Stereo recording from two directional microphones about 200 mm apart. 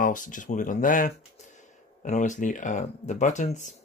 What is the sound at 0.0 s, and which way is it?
Speech, 40° left (ahead or behind).